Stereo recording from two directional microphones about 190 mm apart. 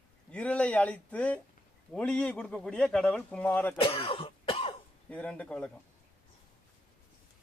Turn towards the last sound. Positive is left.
turn(degrees=5)  # may be behind; listen again after turning